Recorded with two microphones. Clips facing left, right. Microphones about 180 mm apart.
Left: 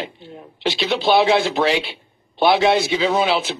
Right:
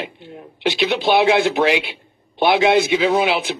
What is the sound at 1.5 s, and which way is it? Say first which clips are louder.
Speech: right 1 dB; 15° right (ahead or behind).